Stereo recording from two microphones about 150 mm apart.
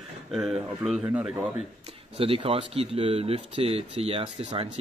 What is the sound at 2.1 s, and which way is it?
Speech, 40° right (ahead or behind).